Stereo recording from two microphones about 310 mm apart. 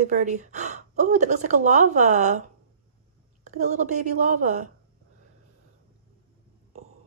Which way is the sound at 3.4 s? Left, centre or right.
Right.